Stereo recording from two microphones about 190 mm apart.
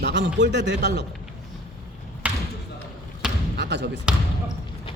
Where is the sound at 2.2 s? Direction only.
5° right (ahead or behind).